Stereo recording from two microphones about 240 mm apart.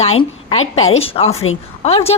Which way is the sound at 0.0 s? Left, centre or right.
Left.